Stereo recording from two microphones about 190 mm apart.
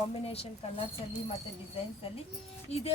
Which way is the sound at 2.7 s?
35° left (ahead or behind).